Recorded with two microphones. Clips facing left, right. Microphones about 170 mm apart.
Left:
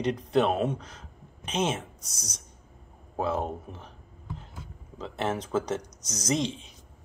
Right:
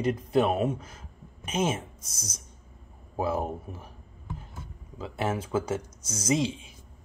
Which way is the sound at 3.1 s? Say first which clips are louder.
Even; 5° right (ahead or behind).